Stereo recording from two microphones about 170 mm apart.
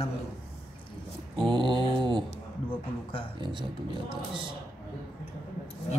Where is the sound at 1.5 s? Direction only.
25° right (ahead or behind).